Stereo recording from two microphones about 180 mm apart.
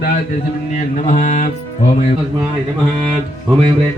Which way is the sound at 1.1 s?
40° left (ahead or behind).